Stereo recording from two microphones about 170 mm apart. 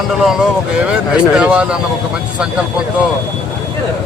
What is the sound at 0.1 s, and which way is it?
Speech, centre (ahead or behind).